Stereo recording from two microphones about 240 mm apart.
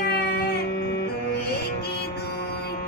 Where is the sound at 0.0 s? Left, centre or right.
Left.